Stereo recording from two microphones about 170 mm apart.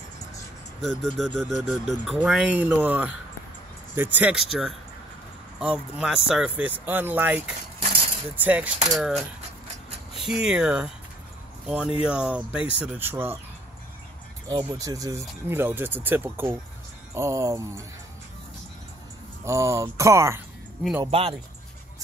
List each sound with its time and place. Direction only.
0.7 s speech: 5° left (ahead or behind)
8.9 s speech: centre (ahead or behind)
14.7 s speech: 20° right (ahead or behind)
19.4 s speech: 15° right (ahead or behind)
21.0 s speech: 35° right (ahead or behind)